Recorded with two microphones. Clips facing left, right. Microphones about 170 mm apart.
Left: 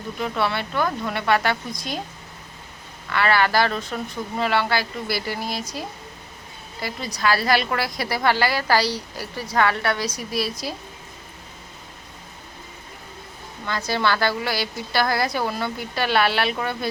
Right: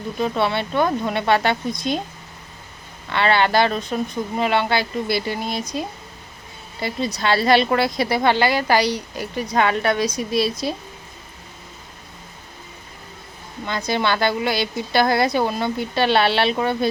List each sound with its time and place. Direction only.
0.2 s a woman's voice: 25° right (ahead or behind)
3.1 s a woman's voice: 25° right (ahead or behind)
6.7 s a woman's voice: 25° right (ahead or behind)
13.7 s a woman's voice: 20° right (ahead or behind)